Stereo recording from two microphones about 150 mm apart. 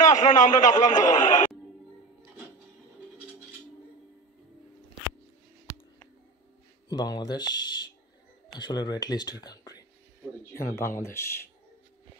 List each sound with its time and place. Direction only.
0.0 s a man's voice: 55° left (ahead or behind)
6.9 s speech: 30° left (ahead or behind)